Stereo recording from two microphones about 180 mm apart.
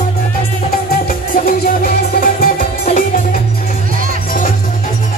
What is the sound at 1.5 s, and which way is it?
Music, 55° left (ahead or behind).